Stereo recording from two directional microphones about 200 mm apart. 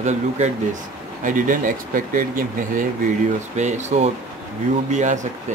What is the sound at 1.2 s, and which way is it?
Speech, 40° right (ahead or behind).